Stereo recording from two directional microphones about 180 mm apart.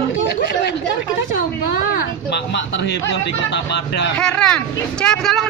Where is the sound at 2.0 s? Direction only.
75° left (ahead or behind).